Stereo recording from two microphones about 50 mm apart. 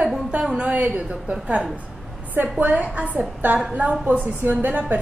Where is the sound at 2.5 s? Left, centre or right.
Right.